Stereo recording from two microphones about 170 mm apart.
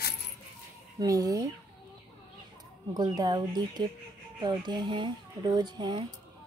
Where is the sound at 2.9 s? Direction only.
25° right (ahead or behind).